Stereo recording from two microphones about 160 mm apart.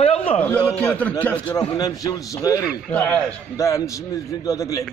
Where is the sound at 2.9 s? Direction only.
5° left (ahead or behind).